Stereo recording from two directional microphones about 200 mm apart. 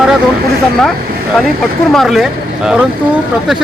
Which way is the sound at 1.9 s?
Centre (ahead or behind).